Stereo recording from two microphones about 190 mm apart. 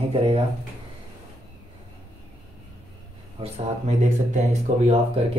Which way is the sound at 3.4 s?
35° right (ahead or behind).